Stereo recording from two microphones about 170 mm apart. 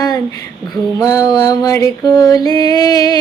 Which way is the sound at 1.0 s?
20° left (ahead or behind).